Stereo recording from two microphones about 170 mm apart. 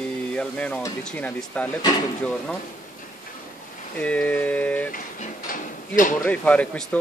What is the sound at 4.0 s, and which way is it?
Speech, 10° left (ahead or behind).